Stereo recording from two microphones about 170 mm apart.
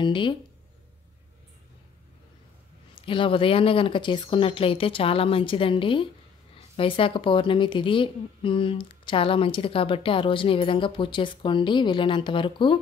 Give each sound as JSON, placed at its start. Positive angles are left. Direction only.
{"t": 0.0, "sound": "speech", "side_deg": 30}
{"t": 2.9, "sound": "speech", "side_deg": 30}